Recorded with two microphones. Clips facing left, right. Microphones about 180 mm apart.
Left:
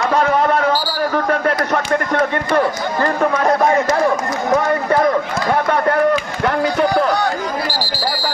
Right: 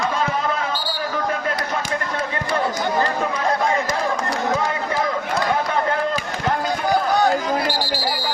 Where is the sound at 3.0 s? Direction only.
60° left (ahead or behind).